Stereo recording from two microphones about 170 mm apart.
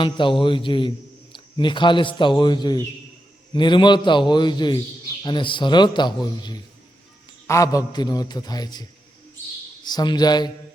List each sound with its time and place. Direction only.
0.0 s a man's voice: 30° left (ahead or behind)
7.4 s a man's voice: 20° left (ahead or behind)